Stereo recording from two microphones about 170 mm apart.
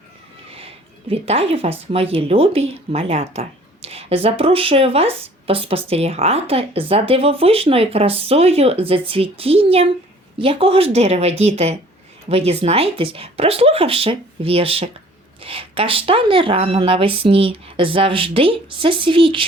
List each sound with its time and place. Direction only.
1.1 s speech: 35° right (ahead or behind)